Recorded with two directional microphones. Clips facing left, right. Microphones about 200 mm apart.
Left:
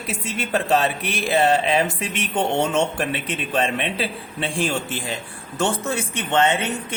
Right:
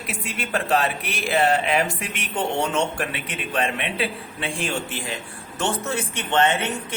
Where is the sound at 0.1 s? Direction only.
25° left (ahead or behind).